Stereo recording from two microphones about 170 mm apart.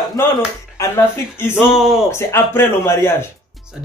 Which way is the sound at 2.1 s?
15° left (ahead or behind).